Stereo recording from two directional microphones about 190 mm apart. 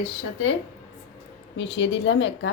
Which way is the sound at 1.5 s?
70° left (ahead or behind).